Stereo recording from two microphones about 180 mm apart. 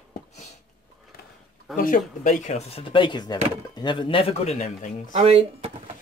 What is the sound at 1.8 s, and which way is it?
Speech, 50° left (ahead or behind).